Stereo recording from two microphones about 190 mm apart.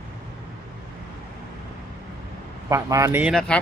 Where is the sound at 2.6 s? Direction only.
15° right (ahead or behind).